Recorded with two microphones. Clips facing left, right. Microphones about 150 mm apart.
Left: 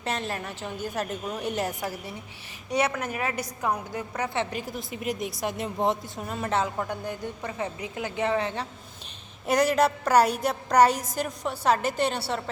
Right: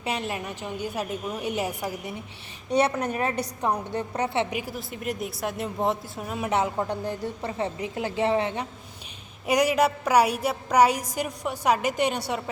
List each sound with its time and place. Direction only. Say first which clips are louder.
0.0 s a woman's voice: right 1 dB; 10° right (ahead or behind)
2.6 s a woman's voice: right 3 dB; 30° right (ahead or behind)
4.5 s a woman's voice: right 1 dB; 5° right (ahead or behind); by 8.6 s 25° right (ahead or behind)
9.5 s a woman's voice: even; 10° right (ahead or behind)